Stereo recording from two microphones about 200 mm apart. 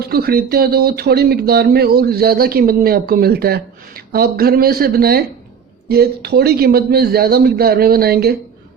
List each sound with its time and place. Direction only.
0.0 s speech: 50° right (ahead or behind)